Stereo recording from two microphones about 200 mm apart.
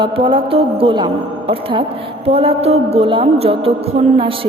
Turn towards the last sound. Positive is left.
turn(degrees=-30)  # may be behind; listen again after turning